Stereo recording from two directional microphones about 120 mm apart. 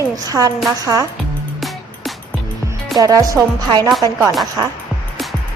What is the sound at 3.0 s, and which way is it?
Speech, 30° right (ahead or behind).